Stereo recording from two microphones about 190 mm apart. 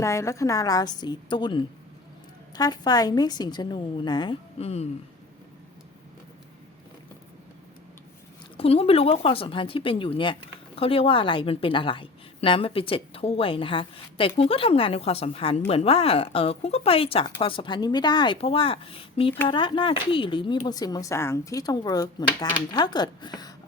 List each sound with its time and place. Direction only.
0.0 s a woman's voice: 15° left (ahead or behind); by 4.9 s 35° left (ahead or behind)
8.5 s a woman's voice: 30° left (ahead or behind)